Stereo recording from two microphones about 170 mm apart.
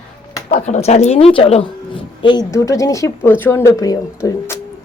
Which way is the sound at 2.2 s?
25° left (ahead or behind).